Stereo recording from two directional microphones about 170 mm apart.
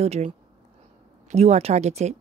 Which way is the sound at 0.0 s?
40° right (ahead or behind).